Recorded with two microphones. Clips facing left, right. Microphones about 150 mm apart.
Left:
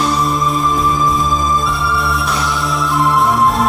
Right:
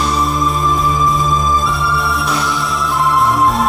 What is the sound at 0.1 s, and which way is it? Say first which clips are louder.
Music: even; centre (ahead or behind).